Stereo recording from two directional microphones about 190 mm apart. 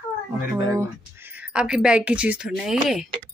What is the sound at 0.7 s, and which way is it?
A woman's voice, 10° right (ahead or behind).